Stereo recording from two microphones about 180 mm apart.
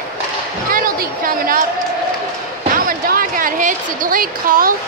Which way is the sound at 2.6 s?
50° right (ahead or behind).